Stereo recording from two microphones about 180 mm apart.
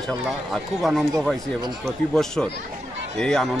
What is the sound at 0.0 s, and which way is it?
Speech, centre (ahead or behind).